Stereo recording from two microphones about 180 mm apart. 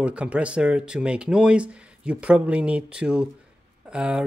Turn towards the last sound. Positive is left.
turn(degrees=-5)  # may be behind; listen again after turning